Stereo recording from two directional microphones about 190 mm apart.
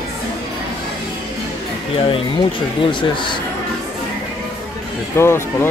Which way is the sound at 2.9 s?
25° left (ahead or behind).